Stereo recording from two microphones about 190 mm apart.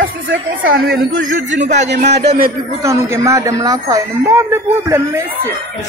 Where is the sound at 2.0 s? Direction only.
55° right (ahead or behind).